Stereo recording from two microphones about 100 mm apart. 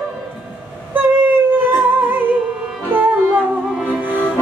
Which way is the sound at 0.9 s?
20° right (ahead or behind).